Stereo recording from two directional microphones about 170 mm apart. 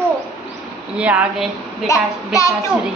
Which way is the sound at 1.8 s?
20° left (ahead or behind).